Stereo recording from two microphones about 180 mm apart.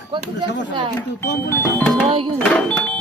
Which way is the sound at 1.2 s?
15° left (ahead or behind).